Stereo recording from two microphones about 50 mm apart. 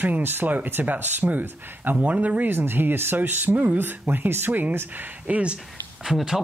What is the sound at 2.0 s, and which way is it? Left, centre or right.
Speech, right.